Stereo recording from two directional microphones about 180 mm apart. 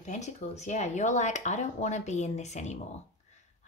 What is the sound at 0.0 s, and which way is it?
Speech, 40° left (ahead or behind).